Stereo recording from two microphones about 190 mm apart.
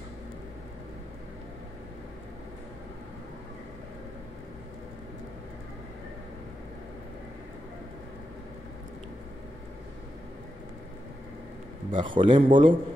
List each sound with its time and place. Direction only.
11.9 s a man's voice: 25° right (ahead or behind)